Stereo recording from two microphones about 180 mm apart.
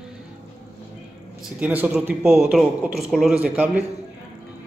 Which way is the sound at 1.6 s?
10° right (ahead or behind).